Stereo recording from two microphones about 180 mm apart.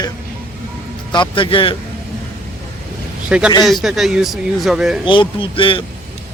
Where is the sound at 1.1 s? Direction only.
25° left (ahead or behind).